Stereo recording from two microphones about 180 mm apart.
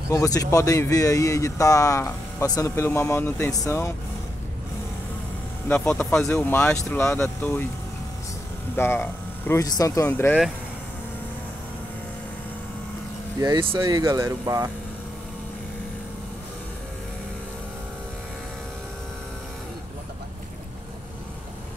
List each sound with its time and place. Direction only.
0.1 s speech: 20° left (ahead or behind)
5.7 s speech: 10° left (ahead or behind)
8.7 s speech: 10° left (ahead or behind)
13.4 s speech: 25° right (ahead or behind)